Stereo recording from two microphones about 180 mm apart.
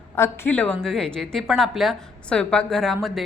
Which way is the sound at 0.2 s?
10° left (ahead or behind).